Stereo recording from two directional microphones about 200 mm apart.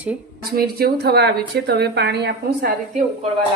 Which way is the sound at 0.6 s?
50° right (ahead or behind).